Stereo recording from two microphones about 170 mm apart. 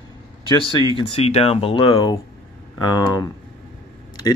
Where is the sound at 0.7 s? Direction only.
30° left (ahead or behind).